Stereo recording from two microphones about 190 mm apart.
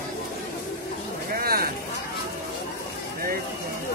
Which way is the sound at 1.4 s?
50° right (ahead or behind).